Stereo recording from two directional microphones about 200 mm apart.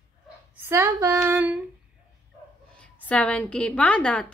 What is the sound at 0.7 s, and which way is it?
Speech, 15° right (ahead or behind).